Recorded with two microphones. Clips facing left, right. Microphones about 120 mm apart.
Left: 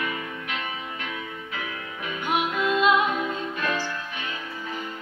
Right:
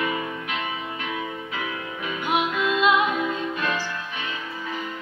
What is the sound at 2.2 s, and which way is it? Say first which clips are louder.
Music: right 1 dB; 40° left (ahead or behind).